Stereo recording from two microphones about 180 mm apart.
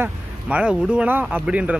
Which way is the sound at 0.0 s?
5° right (ahead or behind).